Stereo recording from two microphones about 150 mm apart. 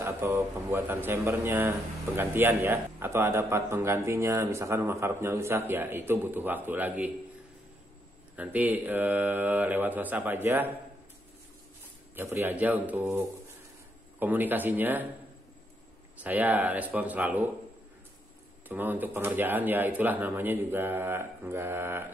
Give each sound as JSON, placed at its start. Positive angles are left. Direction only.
{"t": 0.0, "sound": "speech", "side_deg": -15}
{"t": 8.4, "sound": "speech", "side_deg": -10}
{"t": 12.2, "sound": "speech", "side_deg": -15}
{"t": 16.2, "sound": "speech", "side_deg": -10}
{"t": 18.7, "sound": "speech", "side_deg": -10}